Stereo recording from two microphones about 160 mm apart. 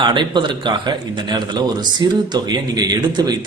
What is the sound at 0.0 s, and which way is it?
A man's voice, 30° right (ahead or behind).